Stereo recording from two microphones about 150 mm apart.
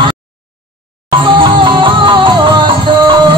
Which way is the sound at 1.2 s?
35° right (ahead or behind).